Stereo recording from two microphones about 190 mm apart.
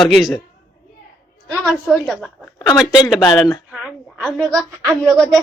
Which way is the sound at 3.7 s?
Centre (ahead or behind).